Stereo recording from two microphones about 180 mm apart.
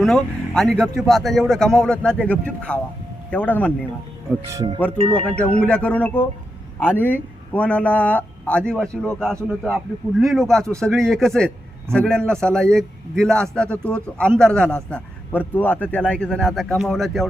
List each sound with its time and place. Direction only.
0.0 s a man's voice: centre (ahead or behind)
4.4 s speech: 15° right (ahead or behind)
5.6 s a man's voice: 5° left (ahead or behind)